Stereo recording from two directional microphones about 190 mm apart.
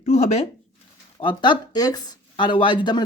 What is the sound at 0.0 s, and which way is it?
Speech, 35° left (ahead or behind).